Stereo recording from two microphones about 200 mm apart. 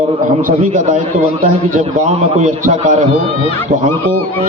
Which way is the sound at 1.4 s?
35° right (ahead or behind).